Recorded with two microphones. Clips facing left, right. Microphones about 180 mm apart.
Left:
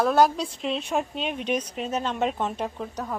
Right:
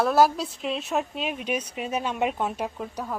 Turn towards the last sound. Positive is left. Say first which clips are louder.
# even
turn(degrees=-10)  # may be behind; listen again after turning